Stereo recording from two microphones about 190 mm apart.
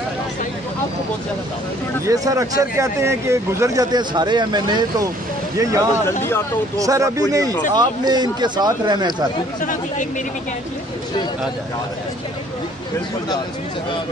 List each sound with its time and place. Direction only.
2.0 s speech: 20° right (ahead or behind)
9.6 s speech: 40° left (ahead or behind)